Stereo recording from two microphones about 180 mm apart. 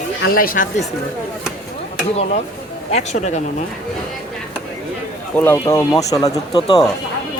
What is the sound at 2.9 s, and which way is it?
Speech, 40° left (ahead or behind).